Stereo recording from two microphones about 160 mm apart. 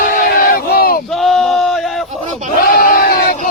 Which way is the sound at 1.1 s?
Centre (ahead or behind).